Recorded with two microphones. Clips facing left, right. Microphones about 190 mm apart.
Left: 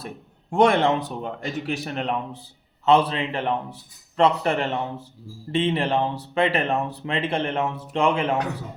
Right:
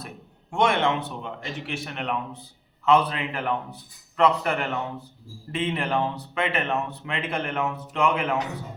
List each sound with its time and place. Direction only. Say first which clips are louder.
0.5 s a man's voice: left 4 dB; 35° left (ahead or behind)